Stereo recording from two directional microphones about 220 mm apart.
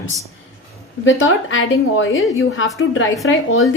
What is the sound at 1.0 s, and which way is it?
A woman's voice, 60° left (ahead or behind).